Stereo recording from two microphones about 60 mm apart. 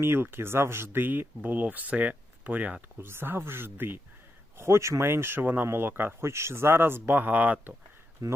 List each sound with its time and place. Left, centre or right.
0.0 s speech: right
3.0 s speech: right
4.5 s speech: right
5.6 s speech: right
6.2 s speech: right
7.0 s speech: right
8.2 s speech: right